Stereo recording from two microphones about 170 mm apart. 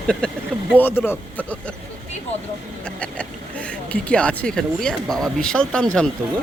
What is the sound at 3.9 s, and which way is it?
Speech, 5° left (ahead or behind).